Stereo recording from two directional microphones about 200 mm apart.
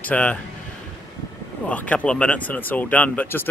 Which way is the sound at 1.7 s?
5° left (ahead or behind).